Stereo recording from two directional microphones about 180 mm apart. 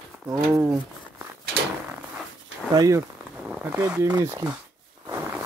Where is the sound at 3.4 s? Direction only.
5° right (ahead or behind).